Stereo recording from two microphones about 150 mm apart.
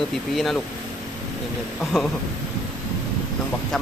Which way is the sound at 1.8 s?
Centre (ahead or behind).